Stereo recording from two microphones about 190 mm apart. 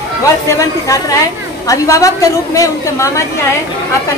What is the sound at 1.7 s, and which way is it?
A woman's voice, 15° left (ahead or behind).